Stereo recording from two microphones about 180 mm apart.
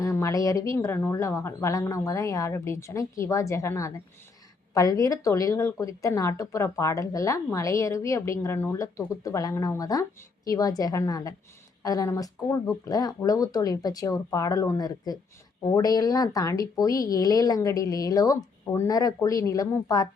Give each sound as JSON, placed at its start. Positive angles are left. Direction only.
{"t": 0.0, "sound": "speech", "side_deg": 15}